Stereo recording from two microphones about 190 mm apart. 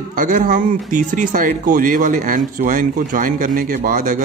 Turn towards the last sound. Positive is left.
turn(degrees=-45)  # may be behind; listen again after turning